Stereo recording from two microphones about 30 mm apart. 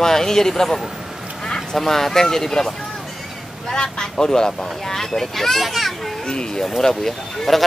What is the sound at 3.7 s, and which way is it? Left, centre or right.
Speech, left.